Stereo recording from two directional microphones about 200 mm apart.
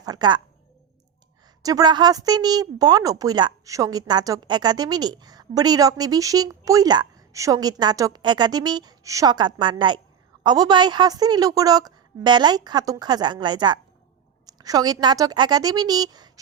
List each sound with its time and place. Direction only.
0.0 s speech: 20° right (ahead or behind)
1.6 s speech: 20° right (ahead or behind)